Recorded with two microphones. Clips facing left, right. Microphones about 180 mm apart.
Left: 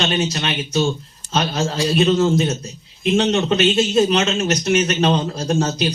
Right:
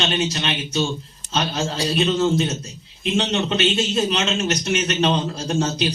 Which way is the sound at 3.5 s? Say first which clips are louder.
Left 5 dB; 45° left (ahead or behind).